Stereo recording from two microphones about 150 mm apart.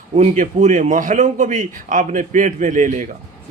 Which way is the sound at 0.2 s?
50° right (ahead or behind).